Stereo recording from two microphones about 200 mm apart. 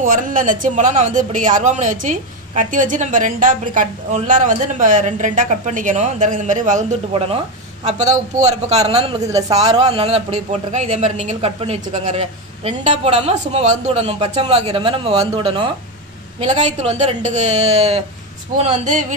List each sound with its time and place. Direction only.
0.0 s speech: 40° right (ahead or behind); by 15.7 s 25° right (ahead or behind)
16.3 s speech: 35° right (ahead or behind)